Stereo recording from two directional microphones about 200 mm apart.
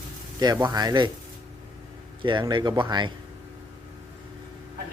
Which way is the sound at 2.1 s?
25° right (ahead or behind).